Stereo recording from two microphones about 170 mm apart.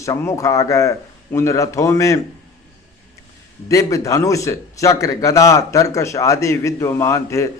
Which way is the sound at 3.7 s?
20° left (ahead or behind).